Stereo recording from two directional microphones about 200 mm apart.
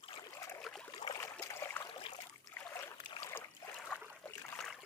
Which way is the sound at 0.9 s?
20° left (ahead or behind).